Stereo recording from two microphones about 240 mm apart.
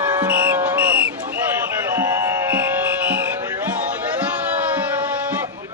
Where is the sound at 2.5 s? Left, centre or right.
Centre.